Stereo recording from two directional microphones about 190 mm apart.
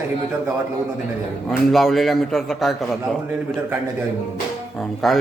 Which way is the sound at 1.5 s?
Centre (ahead or behind).